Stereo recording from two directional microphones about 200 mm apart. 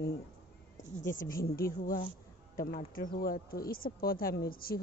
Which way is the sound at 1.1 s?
45° left (ahead or behind).